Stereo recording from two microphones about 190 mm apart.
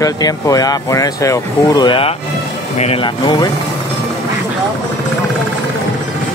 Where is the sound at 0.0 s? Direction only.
20° left (ahead or behind).